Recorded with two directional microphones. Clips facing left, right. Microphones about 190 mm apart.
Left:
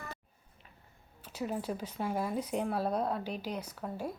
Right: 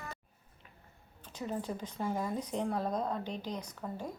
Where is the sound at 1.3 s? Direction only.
10° left (ahead or behind).